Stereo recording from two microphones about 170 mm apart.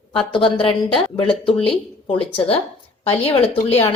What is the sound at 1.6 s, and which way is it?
A woman's voice, 35° left (ahead or behind).